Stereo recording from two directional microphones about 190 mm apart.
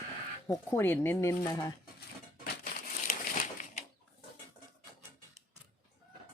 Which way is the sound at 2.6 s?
45° left (ahead or behind).